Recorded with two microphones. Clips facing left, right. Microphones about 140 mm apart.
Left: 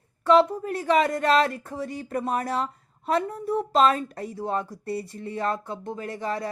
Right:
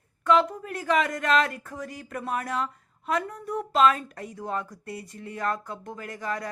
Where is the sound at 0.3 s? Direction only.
35° left (ahead or behind).